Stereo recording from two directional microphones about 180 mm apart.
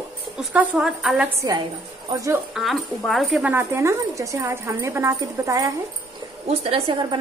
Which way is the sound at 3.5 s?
15° right (ahead or behind).